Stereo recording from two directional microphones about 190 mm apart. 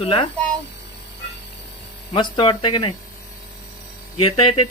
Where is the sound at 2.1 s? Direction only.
25° left (ahead or behind).